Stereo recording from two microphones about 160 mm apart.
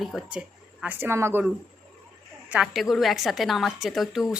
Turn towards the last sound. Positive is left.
turn(degrees=0)  # may be behind; listen again after turning